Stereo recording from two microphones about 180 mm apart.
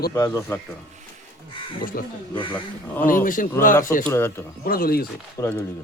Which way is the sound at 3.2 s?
50° left (ahead or behind).